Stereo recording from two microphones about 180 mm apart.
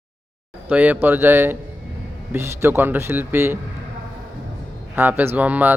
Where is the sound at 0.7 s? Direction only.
10° right (ahead or behind).